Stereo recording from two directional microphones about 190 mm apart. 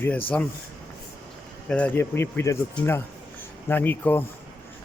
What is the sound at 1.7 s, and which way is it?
Speech, 10° left (ahead or behind).